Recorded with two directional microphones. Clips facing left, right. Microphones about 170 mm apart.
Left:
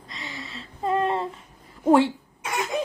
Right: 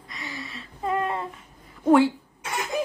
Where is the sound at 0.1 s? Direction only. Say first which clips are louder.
Right 1 dB; 25° left (ahead or behind).